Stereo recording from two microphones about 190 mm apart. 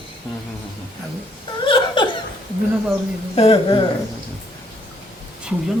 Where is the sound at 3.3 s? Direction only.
30° left (ahead or behind).